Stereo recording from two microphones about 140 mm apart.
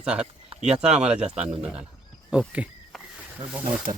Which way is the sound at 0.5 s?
50° right (ahead or behind).